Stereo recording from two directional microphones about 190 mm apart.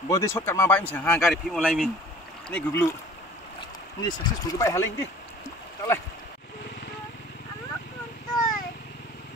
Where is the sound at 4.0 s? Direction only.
20° left (ahead or behind).